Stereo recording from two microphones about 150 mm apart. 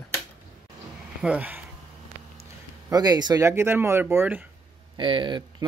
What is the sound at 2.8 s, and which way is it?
A man's voice, 25° right (ahead or behind).